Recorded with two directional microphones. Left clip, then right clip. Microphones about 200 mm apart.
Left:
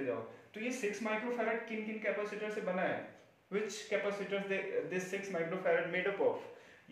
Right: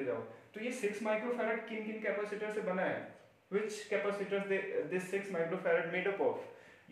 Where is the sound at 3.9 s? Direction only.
5° right (ahead or behind).